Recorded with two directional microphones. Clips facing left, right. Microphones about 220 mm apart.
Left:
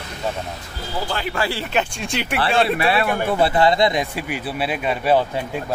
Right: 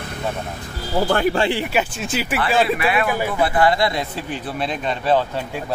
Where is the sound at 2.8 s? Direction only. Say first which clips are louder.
Even; 30° left (ahead or behind); by 5.2 s 10° left (ahead or behind).